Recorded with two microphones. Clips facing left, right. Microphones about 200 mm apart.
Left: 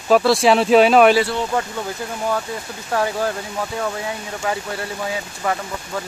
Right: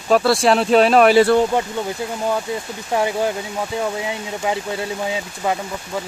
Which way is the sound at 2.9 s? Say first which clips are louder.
Right 1 dB; 15° right (ahead or behind).